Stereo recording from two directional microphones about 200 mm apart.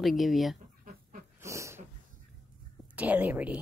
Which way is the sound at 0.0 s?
Centre (ahead or behind).